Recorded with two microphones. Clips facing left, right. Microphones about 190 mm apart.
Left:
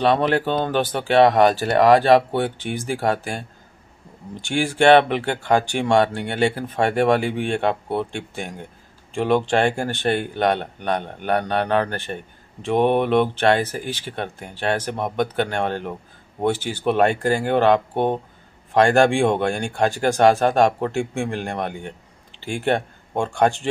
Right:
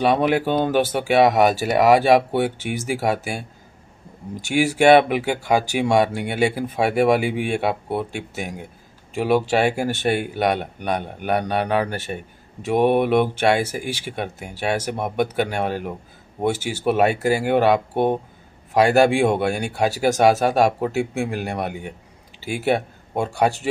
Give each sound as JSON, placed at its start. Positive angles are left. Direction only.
{"t": 0.0, "sound": "speech", "side_deg": -10}
{"t": 4.4, "sound": "speech", "side_deg": -10}